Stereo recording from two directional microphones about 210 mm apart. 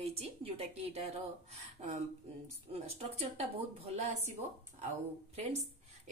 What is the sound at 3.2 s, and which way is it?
A woman's voice, 30° right (ahead or behind).